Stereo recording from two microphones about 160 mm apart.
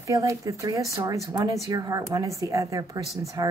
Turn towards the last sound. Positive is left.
turn(degrees=-25)  # may be behind; listen again after turning